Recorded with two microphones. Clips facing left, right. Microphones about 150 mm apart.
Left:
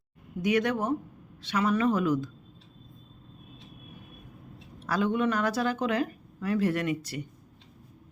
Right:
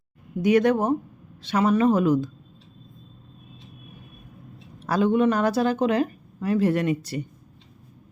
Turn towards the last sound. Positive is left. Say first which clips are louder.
# right 5 dB
turn(degrees=-30)  # may be behind; listen again after turning